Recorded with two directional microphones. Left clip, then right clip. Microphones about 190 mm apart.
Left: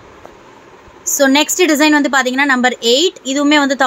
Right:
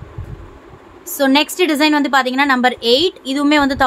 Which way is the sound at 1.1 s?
10° left (ahead or behind).